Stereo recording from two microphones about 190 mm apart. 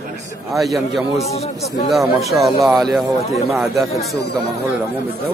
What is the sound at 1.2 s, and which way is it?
Speech, 35° left (ahead or behind).